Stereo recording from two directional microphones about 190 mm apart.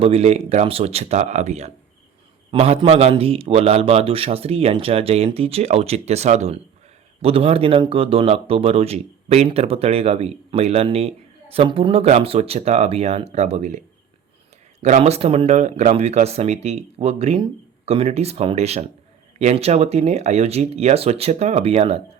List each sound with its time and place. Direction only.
0.0 s a man's voice: 35° right (ahead or behind)